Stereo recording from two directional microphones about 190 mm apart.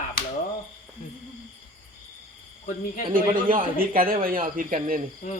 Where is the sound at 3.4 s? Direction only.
50° right (ahead or behind).